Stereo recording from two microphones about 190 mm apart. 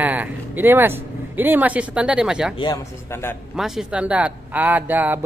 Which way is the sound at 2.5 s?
25° left (ahead or behind).